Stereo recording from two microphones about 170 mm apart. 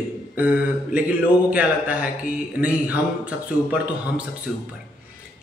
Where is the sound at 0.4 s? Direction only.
10° right (ahead or behind).